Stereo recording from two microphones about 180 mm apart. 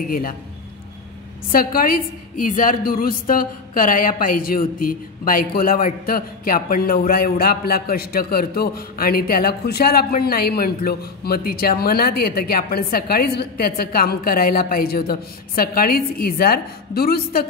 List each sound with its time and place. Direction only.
0.1 s speech: 55° left (ahead or behind)
1.5 s a woman's voice: 55° left (ahead or behind)